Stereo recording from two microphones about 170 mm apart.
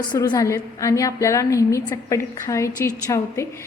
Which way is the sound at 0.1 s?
25° left (ahead or behind).